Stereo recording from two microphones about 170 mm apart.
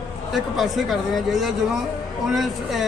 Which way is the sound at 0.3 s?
Centre (ahead or behind).